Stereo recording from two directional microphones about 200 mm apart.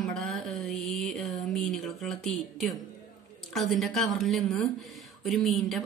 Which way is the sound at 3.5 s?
Centre (ahead or behind).